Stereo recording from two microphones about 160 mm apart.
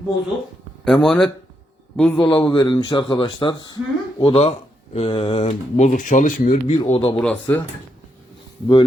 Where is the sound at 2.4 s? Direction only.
25° left (ahead or behind); by 6.8 s 45° left (ahead or behind).